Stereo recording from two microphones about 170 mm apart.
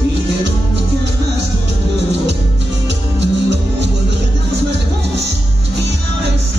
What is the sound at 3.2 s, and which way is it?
Music, 90° right.